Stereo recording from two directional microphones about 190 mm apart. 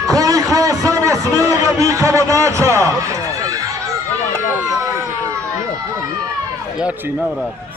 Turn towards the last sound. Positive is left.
turn(degrees=-5)  # may be behind; listen again after turning